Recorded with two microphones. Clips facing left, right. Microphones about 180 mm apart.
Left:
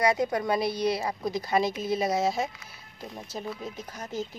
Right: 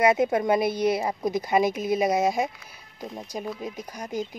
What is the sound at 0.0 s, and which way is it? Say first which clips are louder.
Speech: right 4 dB; 20° right (ahead or behind).